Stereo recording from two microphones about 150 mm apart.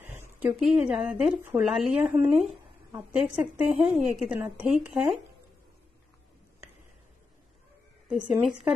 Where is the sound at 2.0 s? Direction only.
15° right (ahead or behind).